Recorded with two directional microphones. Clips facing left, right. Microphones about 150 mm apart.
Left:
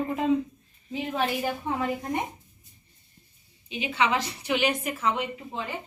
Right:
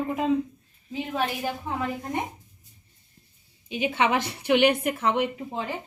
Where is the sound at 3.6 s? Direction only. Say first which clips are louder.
Right 2 dB; 50° right (ahead or behind).